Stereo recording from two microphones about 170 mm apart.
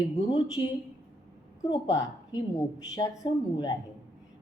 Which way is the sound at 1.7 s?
20° left (ahead or behind).